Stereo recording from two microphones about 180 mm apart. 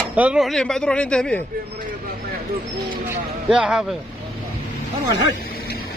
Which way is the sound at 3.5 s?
5° right (ahead or behind).